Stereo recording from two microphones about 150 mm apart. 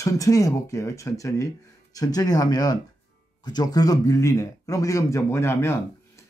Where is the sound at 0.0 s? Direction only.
20° left (ahead or behind).